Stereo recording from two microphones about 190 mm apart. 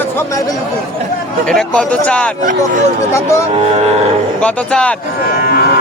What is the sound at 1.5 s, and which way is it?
Speech, 5° left (ahead or behind).